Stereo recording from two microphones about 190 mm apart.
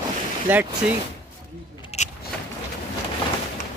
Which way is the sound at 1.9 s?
35° left (ahead or behind).